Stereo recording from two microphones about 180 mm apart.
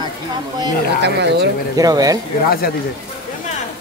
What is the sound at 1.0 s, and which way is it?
Speech, 70° right (ahead or behind).